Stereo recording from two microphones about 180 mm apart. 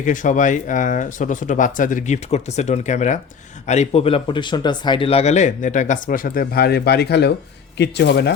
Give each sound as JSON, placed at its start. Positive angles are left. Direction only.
{"t": 0.0, "sound": "speech", "side_deg": 45}